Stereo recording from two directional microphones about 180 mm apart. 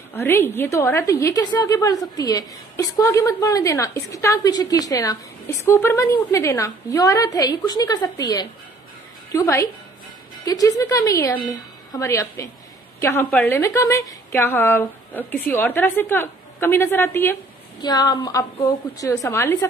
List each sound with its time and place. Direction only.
0.2 s a woman's voice: 10° left (ahead or behind)
17.8 s a woman's voice: 25° left (ahead or behind)